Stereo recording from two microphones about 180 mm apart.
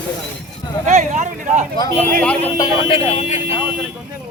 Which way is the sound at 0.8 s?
40° right (ahead or behind).